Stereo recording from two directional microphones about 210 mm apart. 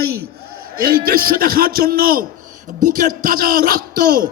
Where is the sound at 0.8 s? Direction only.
45° right (ahead or behind).